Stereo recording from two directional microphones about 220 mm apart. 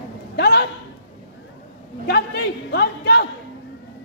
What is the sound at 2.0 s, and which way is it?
A man's voice, 45° left (ahead or behind).